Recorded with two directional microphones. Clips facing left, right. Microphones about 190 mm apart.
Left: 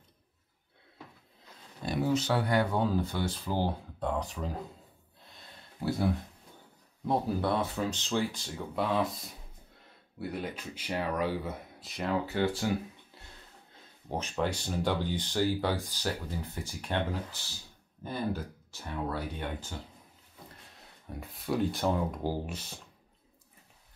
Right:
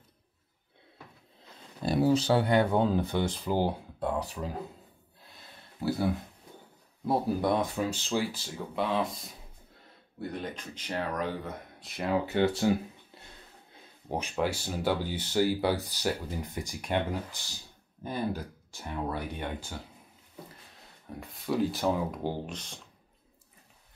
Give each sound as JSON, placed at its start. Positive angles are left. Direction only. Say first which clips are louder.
{"t": 1.9, "sound": "speech", "louder": "right 4 dB", "side_deg": -35}
{"t": 5.8, "sound": "speech", "louder": "right 1 dB", "side_deg": 0}
{"t": 7.1, "sound": "speech", "louder": "right 2 dB", "side_deg": -10}
{"t": 12.1, "sound": "speech", "louder": "right 3 dB", "side_deg": -20}
{"t": 13.7, "sound": "speech", "louder": "right 2 dB", "side_deg": -10}
{"t": 21.1, "sound": "speech", "louder": "right 1 dB", "side_deg": 0}